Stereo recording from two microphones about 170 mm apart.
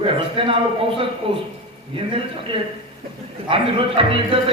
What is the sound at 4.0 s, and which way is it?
Speech, 30° right (ahead or behind).